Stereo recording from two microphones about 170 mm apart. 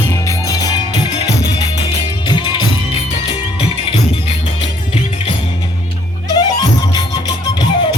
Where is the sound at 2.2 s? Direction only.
30° left (ahead or behind).